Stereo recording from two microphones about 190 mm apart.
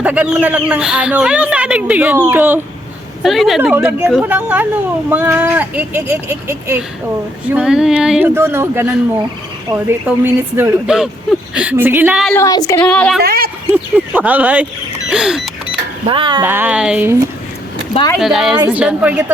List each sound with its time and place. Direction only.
0.0 s speech: 5° right (ahead or behind)
3.2 s speech: centre (ahead or behind)
12.3 s speech: 15° left (ahead or behind)
12.8 s speech: 5° left (ahead or behind)
13.2 s speech: 50° right (ahead or behind)
13.7 s speech: 10° right (ahead or behind)
15.1 s a sound: 5° right (ahead or behind)
16.0 s speech: 25° right (ahead or behind)
16.4 s speech: 10° right (ahead or behind)
18.2 s speech: centre (ahead or behind)